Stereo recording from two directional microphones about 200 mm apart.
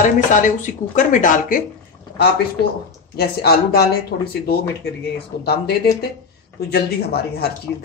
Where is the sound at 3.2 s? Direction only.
55° left (ahead or behind).